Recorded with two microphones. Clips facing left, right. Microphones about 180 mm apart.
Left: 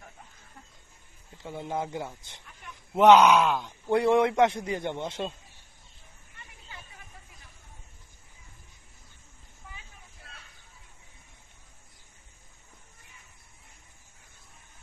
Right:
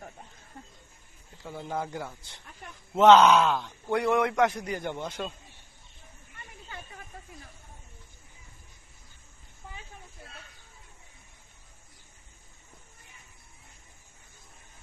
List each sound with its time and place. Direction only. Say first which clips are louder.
1.4 s a man's voice: left 1 dB; 20° left (ahead or behind)
3.9 s a man's voice: left 3 dB; 25° left (ahead or behind)